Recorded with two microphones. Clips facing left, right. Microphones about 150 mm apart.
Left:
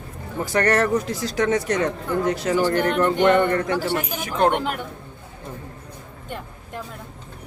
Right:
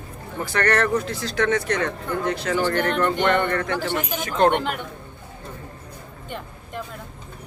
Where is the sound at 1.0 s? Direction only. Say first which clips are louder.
Left 1 dB; 40° left (ahead or behind).